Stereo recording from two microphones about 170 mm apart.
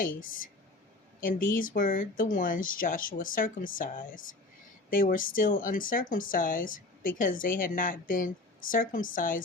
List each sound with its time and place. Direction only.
1.2 s speech: 55° left (ahead or behind)